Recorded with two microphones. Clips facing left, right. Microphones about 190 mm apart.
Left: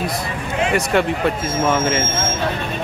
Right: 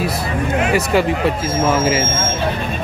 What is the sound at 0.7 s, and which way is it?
Speech, centre (ahead or behind).